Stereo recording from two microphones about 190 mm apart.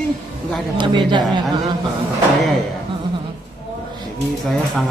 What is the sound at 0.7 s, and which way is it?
Speech, 25° right (ahead or behind).